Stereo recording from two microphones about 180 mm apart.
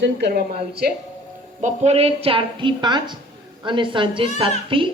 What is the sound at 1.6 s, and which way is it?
A woman's voice, 35° right (ahead or behind).